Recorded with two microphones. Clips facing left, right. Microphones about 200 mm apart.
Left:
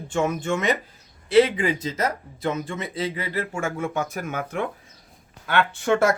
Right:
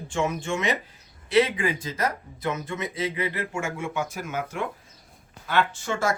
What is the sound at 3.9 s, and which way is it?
Speech, 55° left (ahead or behind).